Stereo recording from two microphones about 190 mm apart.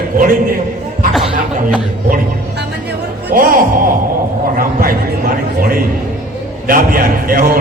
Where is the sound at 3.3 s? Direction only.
50° right (ahead or behind).